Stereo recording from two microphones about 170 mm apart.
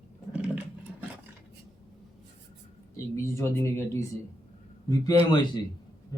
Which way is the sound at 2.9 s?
15° left (ahead or behind).